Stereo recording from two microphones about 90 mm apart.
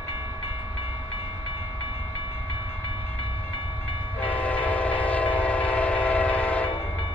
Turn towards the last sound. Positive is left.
turn(degrees=15)  # may be behind; listen again after turning